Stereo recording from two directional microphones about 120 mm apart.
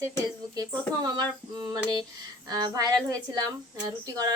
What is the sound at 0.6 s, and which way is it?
A woman's voice, 35° right (ahead or behind).